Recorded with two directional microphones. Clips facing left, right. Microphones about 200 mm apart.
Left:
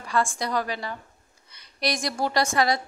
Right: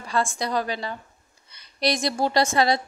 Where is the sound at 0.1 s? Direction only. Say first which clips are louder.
Right 1 dB; 25° right (ahead or behind).